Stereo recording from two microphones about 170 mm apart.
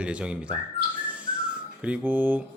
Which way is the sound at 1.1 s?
10° right (ahead or behind).